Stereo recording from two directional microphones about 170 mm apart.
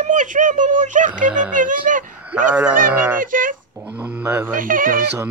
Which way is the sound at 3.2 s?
50° right (ahead or behind).